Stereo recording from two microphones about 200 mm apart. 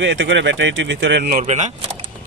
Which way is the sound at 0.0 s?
70° right (ahead or behind).